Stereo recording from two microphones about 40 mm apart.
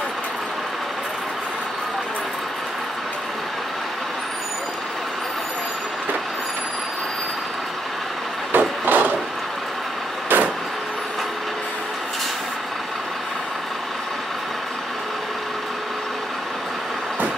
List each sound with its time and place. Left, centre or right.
8.5 s vehicle: right
10.3 s vehicle: right